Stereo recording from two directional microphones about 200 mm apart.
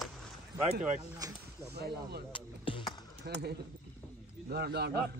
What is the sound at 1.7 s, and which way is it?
Speech, 55° right (ahead or behind).